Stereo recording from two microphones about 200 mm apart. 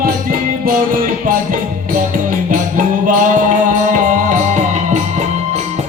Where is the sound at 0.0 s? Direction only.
45° right (ahead or behind).